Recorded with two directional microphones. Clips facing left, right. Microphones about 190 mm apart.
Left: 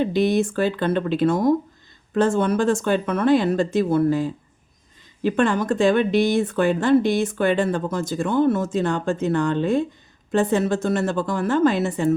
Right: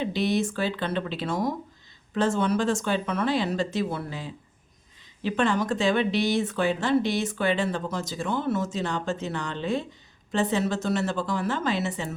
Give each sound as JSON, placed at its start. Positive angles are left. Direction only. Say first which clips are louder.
{"t": 0.0, "sound": "speech", "louder": "left 6 dB", "side_deg": 50}